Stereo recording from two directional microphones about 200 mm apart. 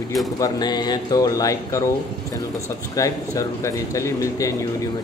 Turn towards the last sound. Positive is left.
turn(degrees=15)  # may be behind; listen again after turning